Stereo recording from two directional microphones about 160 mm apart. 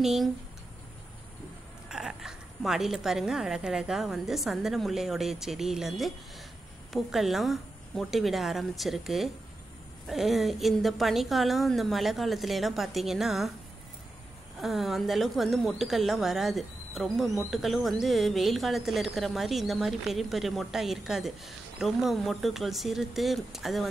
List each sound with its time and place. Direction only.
0.0 s speech: centre (ahead or behind)
1.9 s speech: 5° right (ahead or behind)
14.6 s speech: centre (ahead or behind)